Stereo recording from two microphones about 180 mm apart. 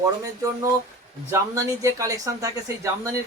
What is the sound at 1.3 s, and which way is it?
Speech, 15° right (ahead or behind).